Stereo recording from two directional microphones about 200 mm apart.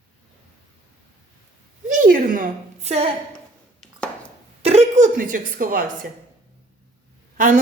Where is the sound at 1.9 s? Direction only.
40° right (ahead or behind).